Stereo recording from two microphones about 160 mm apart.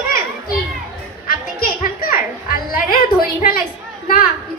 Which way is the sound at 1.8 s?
65° left (ahead or behind).